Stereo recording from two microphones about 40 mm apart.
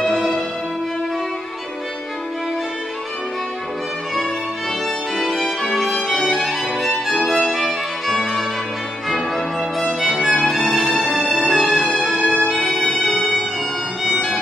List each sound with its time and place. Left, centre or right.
0.0 s music: centre
5.1 s violin: centre
5.9 s music: centre
6.3 s violin: centre
7.4 s music: centre
9.9 s music: centre
14.0 s violin: centre